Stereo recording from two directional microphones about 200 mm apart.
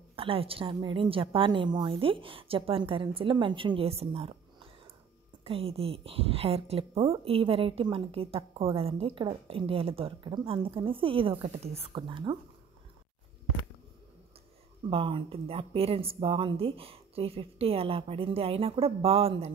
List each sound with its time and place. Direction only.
0.1 s a woman's voice: 25° right (ahead or behind)
14.9 s a woman's voice: 25° right (ahead or behind)